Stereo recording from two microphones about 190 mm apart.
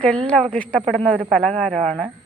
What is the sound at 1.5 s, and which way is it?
Speech, 30° right (ahead or behind).